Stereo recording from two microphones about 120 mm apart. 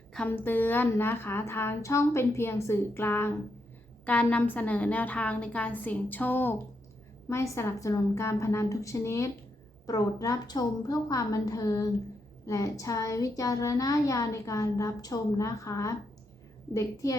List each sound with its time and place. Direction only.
0.1 s a woman's voice: 15° left (ahead or behind); by 17.2 s 30° left (ahead or behind)